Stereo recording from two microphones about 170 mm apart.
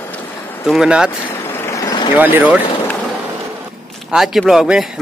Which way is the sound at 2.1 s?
10° right (ahead or behind).